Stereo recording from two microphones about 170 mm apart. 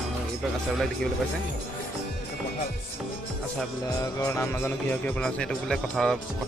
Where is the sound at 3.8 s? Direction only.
15° left (ahead or behind).